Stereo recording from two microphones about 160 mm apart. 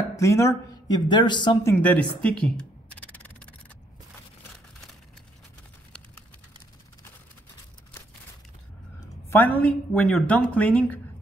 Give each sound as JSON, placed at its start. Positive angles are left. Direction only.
{"t": 0.1, "sound": "speech", "side_deg": 20}
{"t": 1.7, "sound": "a woman's voice", "side_deg": 10}
{"t": 3.1, "sound": "crow", "side_deg": 10}
{"t": 9.3, "sound": "a woman's voice", "side_deg": 10}